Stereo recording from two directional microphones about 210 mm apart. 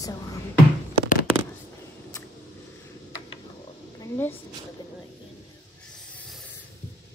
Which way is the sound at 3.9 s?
10° left (ahead or behind).